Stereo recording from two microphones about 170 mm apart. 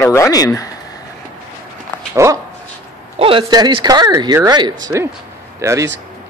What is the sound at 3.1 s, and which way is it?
A man's voice, 35° right (ahead or behind).